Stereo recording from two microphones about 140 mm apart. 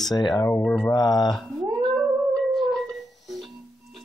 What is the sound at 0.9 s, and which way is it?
Speech, 30° left (ahead or behind).